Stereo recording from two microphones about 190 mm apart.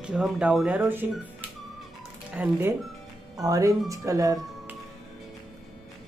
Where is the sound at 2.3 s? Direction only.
10° right (ahead or behind).